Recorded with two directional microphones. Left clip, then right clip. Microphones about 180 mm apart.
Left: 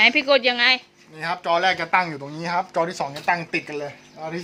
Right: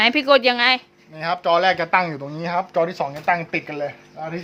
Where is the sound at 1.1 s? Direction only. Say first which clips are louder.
Right 3 dB; 55° right (ahead or behind).